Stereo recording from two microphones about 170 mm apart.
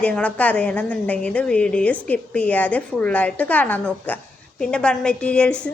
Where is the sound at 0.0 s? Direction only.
5° left (ahead or behind).